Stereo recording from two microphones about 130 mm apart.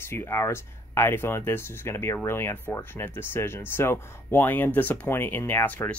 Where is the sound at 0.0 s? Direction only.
20° left (ahead or behind).